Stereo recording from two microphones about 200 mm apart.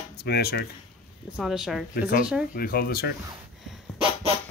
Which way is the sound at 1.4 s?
Centre (ahead or behind).